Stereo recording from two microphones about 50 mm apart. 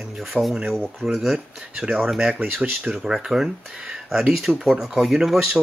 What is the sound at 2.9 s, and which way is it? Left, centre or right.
Speech, centre.